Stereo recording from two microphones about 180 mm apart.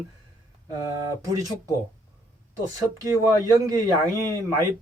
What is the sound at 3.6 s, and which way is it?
Speech, 20° right (ahead or behind).